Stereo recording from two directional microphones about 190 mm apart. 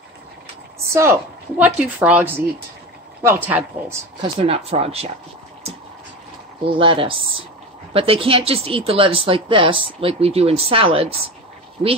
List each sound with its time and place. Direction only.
0.8 s a woman's voice: 15° right (ahead or behind)
4.2 s speech: 30° right (ahead or behind)
6.7 s speech: 30° right (ahead or behind)